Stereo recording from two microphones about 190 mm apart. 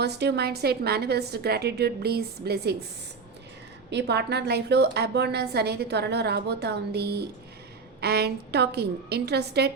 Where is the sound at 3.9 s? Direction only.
60° right (ahead or behind).